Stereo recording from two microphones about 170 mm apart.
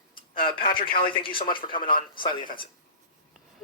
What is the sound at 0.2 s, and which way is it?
Tick-tock, 60° left (ahead or behind).